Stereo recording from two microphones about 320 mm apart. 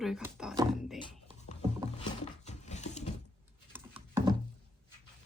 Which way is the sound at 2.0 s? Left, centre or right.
Left.